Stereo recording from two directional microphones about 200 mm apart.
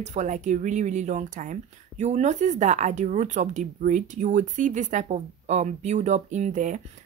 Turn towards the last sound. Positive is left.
turn(degrees=-40)  # may be behind; listen again after turning